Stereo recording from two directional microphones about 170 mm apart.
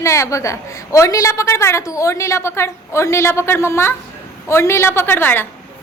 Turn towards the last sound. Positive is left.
turn(degrees=10)  # may be behind; listen again after turning